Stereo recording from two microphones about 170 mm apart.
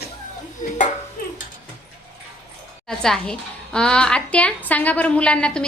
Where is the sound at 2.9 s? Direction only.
5° left (ahead or behind).